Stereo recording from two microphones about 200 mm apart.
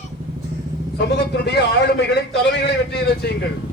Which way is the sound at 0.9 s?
55° left (ahead or behind).